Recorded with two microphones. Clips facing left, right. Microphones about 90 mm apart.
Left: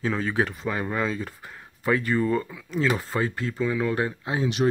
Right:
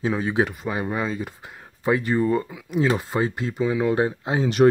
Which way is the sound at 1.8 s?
20° right (ahead or behind).